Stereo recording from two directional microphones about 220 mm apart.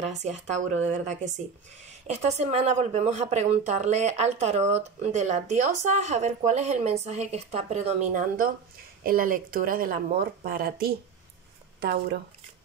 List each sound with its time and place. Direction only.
0.2 s speech: 30° right (ahead or behind)